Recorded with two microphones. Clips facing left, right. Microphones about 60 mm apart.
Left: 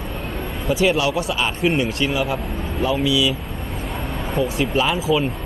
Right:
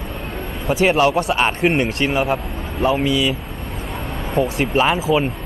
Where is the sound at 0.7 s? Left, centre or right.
Right.